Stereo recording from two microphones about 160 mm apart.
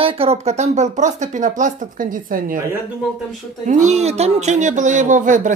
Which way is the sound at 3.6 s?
50° right (ahead or behind).